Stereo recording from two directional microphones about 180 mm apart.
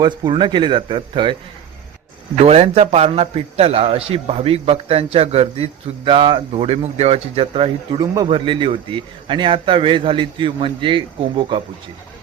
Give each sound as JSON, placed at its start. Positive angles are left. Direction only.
{"t": 0.0, "sound": "a man's voice", "side_deg": -25}
{"t": 2.4, "sound": "a man's voice", "side_deg": -35}